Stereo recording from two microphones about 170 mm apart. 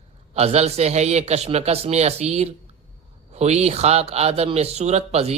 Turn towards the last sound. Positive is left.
turn(degrees=-40)  # may be behind; listen again after turning